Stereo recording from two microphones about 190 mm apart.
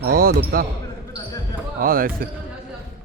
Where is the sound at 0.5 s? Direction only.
50° right (ahead or behind).